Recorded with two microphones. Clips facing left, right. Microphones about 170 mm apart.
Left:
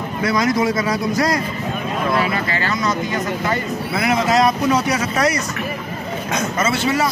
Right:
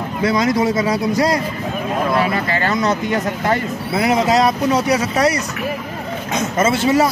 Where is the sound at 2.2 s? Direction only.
45° right (ahead or behind).